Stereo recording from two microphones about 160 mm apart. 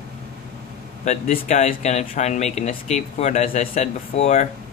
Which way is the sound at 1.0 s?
45° left (ahead or behind).